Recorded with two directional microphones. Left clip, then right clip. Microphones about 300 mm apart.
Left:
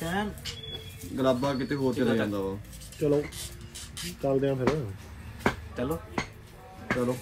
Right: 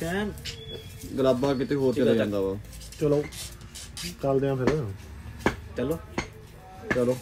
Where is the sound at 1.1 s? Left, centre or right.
Centre.